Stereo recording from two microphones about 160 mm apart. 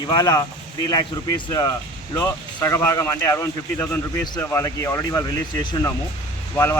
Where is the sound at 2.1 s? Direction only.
20° left (ahead or behind).